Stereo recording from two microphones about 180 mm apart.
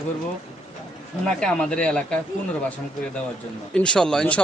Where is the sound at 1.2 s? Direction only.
5° left (ahead or behind).